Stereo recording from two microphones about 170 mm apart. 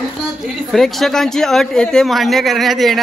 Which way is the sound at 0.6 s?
Centre (ahead or behind).